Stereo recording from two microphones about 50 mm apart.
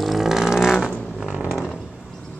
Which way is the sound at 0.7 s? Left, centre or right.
Centre.